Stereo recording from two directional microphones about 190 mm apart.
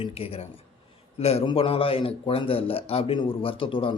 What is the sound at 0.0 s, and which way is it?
A man's voice, 30° left (ahead or behind).